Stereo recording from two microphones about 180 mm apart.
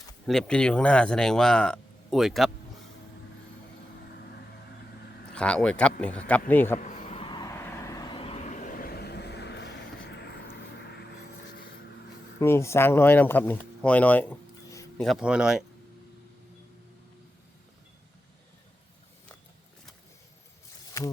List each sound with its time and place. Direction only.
0.3 s speech: 5° left (ahead or behind)
5.3 s speech: 5° left (ahead or behind)
6.7 s vehicle: 40° left (ahead or behind); by 11.0 s 70° left (ahead or behind)
12.4 s speech: 15° left (ahead or behind)
14.9 s speech: centre (ahead or behind)
20.9 s speech: 15° left (ahead or behind)